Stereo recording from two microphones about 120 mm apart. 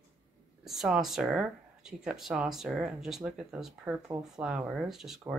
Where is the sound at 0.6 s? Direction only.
5° right (ahead or behind).